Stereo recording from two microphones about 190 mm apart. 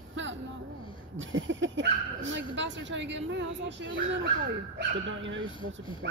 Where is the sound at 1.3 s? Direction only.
85° right.